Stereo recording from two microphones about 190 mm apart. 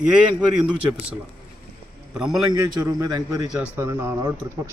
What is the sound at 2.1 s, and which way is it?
Speech, 5° right (ahead or behind).